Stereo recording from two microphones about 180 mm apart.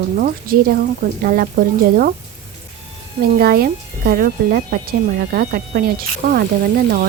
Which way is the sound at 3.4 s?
60° right (ahead or behind).